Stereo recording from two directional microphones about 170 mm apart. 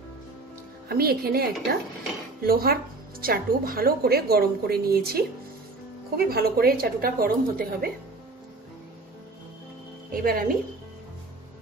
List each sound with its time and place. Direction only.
0.8 s speech: 65° right (ahead or behind)
10.1 s speech: 55° right (ahead or behind)